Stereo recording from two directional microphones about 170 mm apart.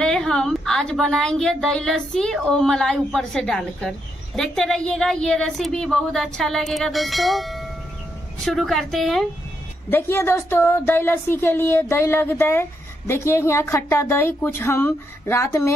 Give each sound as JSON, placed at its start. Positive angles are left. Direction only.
{"t": 0.0, "sound": "a woman's voice", "side_deg": 5}
{"t": 9.8, "sound": "speech", "side_deg": 15}